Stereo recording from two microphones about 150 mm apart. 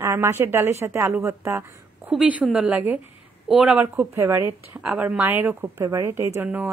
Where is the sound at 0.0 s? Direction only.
15° right (ahead or behind).